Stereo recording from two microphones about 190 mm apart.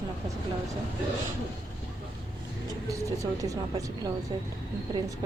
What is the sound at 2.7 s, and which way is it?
Speech, 15° right (ahead or behind).